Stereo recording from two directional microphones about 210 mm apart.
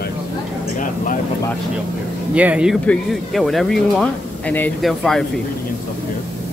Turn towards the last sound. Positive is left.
turn(degrees=0)  # may be behind; listen again after turning